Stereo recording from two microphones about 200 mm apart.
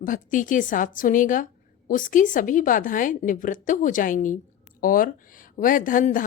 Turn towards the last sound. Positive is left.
turn(degrees=40)  # may be behind; listen again after turning